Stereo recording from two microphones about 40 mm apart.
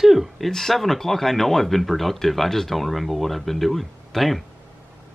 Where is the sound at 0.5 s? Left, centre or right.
Centre.